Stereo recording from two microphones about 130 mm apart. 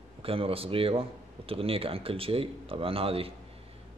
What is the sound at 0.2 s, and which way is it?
Speech, 45° right (ahead or behind).